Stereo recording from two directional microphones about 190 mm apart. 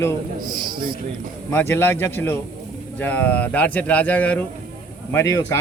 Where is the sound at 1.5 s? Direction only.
10° left (ahead or behind).